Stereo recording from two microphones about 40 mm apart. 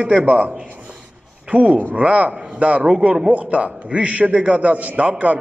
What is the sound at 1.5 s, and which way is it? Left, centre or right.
A man's voice, right.